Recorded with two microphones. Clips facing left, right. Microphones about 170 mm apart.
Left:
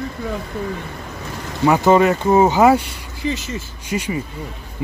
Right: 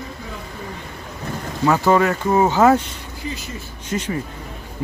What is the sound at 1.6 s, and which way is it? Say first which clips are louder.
Speech: left 3 dB; 15° left (ahead or behind).